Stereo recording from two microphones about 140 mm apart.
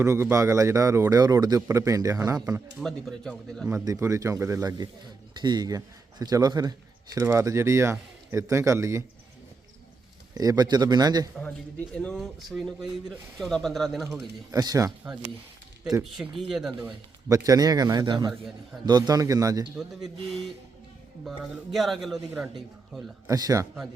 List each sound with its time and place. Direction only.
0.0 s speech: 20° right (ahead or behind)
2.8 s speech: 5° left (ahead or behind)
3.8 s speech: 25° right (ahead or behind)
10.3 s speech: 25° right (ahead or behind)
11.9 s speech: centre (ahead or behind)
14.5 s speech: 25° right (ahead or behind)
16.1 s speech: 5° right (ahead or behind)
17.2 s speech: 25° right (ahead or behind)
19.7 s speech: centre (ahead or behind)
21.2 s speech: centre (ahead or behind)
23.2 s speech: 25° right (ahead or behind)